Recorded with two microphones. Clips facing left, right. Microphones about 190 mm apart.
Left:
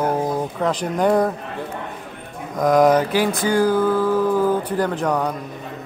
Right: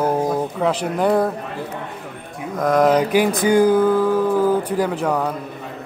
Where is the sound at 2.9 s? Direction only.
15° right (ahead or behind).